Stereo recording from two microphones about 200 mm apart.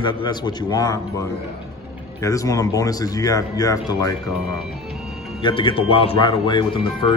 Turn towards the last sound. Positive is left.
turn(degrees=25)  # may be behind; listen again after turning